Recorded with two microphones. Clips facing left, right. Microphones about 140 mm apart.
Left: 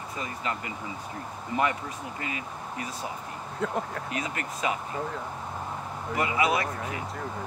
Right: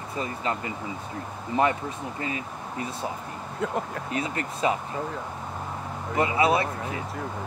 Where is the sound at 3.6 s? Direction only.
5° right (ahead or behind).